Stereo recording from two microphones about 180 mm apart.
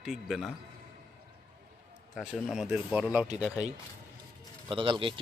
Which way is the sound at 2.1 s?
5° right (ahead or behind).